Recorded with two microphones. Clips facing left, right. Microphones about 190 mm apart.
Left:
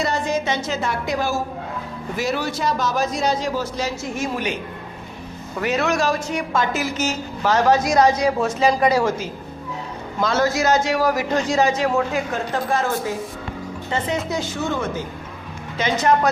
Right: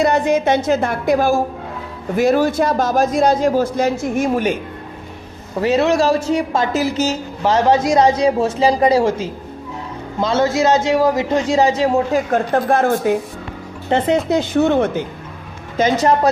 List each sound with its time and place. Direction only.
0.0 s a man's voice: 60° right (ahead or behind)
5.5 s speech: 30° right (ahead or behind)
12.3 s speech: 55° right (ahead or behind)
14.3 s speech: 60° right (ahead or behind)
15.8 s a woman's voice: 35° right (ahead or behind)